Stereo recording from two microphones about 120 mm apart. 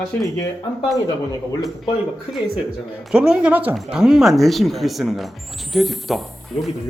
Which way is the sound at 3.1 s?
5° right (ahead or behind).